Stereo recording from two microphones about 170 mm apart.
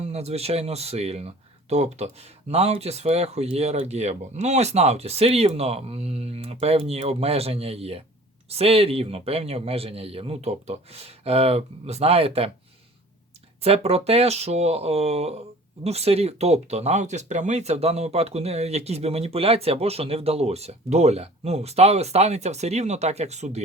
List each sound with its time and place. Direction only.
0.0 s speech: 40° right (ahead or behind)
13.6 s speech: 35° right (ahead or behind)